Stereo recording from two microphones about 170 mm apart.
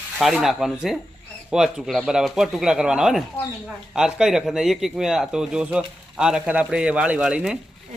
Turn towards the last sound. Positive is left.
turn(degrees=-5)  # may be behind; listen again after turning